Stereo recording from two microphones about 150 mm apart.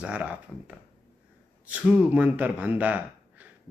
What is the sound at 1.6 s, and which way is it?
Speech, 10° right (ahead or behind).